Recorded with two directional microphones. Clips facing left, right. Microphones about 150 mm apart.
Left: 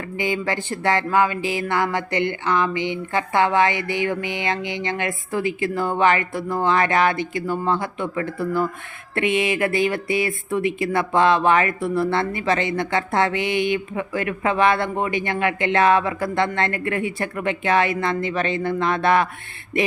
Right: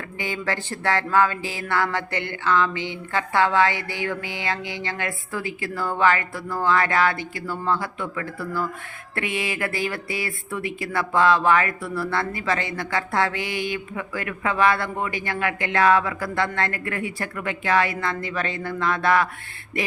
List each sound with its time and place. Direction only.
0.2 s speech: 15° left (ahead or behind)